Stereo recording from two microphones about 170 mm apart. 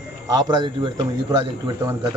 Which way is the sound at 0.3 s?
25° right (ahead or behind).